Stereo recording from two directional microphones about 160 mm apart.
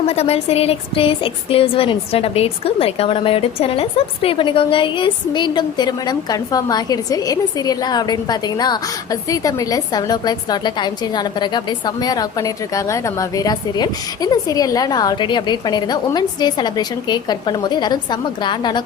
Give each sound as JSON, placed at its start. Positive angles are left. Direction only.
{"t": 0.1, "sound": "a woman's voice", "side_deg": 40}